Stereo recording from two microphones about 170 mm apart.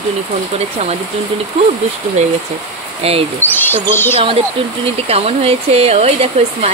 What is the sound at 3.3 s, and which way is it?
Speech, 10° left (ahead or behind).